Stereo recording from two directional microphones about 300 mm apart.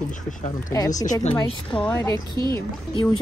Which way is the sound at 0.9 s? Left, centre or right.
Left.